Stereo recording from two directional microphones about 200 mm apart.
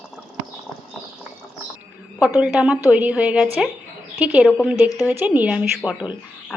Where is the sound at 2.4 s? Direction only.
5° right (ahead or behind).